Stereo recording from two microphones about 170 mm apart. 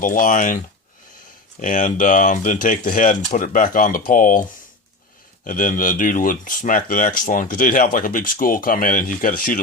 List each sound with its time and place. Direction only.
0.0 s speech: 50° left (ahead or behind)
1.6 s speech: 50° left (ahead or behind)
5.5 s speech: 50° left (ahead or behind)